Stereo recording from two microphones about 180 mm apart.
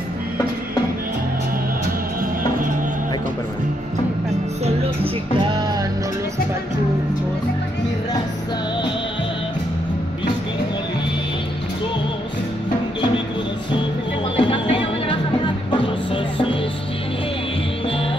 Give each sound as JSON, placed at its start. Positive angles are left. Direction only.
{"t": 4.6, "sound": "music", "side_deg": -30}
{"t": 14.3, "sound": "music", "side_deg": 25}